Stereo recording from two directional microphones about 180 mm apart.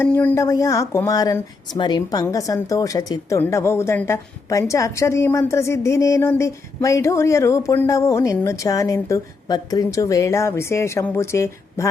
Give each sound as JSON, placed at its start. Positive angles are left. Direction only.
{"t": 0.2, "sound": "speech", "side_deg": 10}